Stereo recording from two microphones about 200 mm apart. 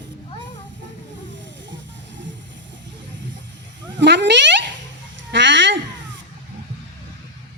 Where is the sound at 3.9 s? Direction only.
60° right (ahead or behind).